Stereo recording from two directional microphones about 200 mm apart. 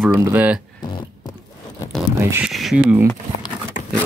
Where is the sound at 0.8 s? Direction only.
20° left (ahead or behind).